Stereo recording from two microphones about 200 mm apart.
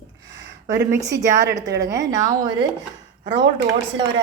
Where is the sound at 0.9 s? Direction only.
15° right (ahead or behind).